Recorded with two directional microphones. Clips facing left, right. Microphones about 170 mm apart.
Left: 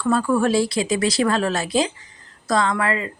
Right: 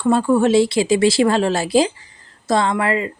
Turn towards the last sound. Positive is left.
turn(degrees=-30)  # may be behind; listen again after turning